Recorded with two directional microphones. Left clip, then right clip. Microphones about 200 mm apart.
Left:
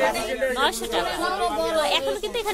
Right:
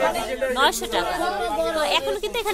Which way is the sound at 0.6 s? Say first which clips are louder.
Right 2 dB; 20° right (ahead or behind).